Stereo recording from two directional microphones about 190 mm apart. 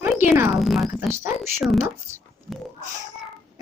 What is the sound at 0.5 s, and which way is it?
Speech, centre (ahead or behind).